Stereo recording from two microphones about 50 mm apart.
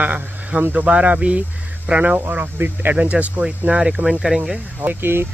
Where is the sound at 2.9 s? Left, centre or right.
Right.